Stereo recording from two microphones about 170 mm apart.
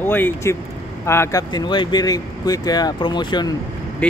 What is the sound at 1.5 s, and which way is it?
Speech, 25° left (ahead or behind).